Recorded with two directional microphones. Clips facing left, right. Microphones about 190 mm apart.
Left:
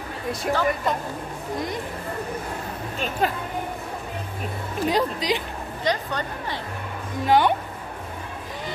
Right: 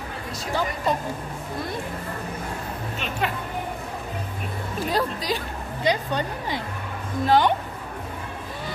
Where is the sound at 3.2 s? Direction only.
40° left (ahead or behind).